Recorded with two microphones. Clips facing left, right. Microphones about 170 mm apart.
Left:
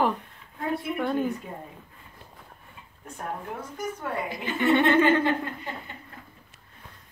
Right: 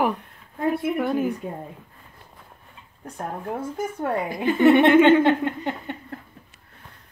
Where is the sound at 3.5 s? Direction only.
50° right (ahead or behind).